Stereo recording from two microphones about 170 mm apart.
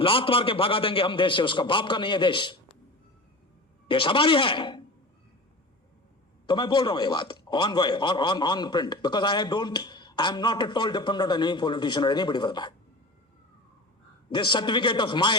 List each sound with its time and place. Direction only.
0.0 s a man's voice: 30° left (ahead or behind)
3.8 s a man's voice: 30° left (ahead or behind)
6.5 s a man's voice: 25° left (ahead or behind)
14.3 s a man's voice: 25° left (ahead or behind)